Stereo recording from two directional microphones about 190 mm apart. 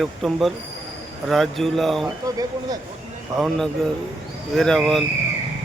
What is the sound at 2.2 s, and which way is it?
Speech, 20° right (ahead or behind).